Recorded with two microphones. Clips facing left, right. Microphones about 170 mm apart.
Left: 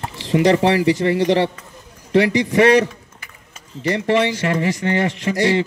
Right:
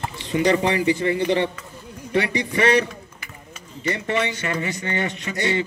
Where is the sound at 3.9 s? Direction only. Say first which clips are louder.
Left 6 dB; 70° left (ahead or behind).